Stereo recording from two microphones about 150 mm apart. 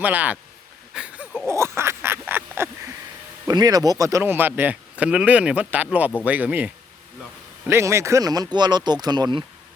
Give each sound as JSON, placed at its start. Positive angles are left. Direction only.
{"t": 0.0, "sound": "speech", "side_deg": -10}
{"t": 0.9, "sound": "a sound", "side_deg": -10}
{"t": 3.4, "sound": "speech", "side_deg": -25}
{"t": 7.7, "sound": "speech", "side_deg": -15}